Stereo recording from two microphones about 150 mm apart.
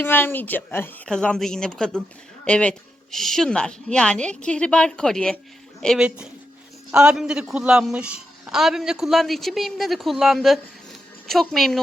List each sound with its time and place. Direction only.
0.0 s a man's voice: 15° left (ahead or behind)